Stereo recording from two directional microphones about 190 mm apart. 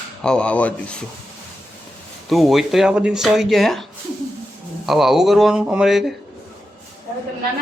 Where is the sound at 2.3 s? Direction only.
Centre (ahead or behind).